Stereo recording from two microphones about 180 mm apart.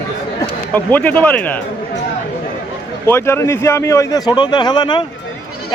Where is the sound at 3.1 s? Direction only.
15° left (ahead or behind).